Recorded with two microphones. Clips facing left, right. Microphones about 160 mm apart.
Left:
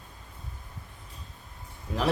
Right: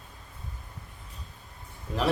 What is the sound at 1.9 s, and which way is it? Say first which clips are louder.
Speech: even; centre (ahead or behind).